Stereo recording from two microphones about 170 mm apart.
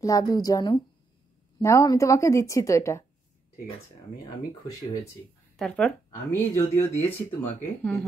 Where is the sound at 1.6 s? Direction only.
15° left (ahead or behind).